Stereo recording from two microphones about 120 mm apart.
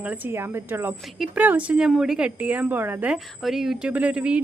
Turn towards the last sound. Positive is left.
turn(degrees=-10)  # may be behind; listen again after turning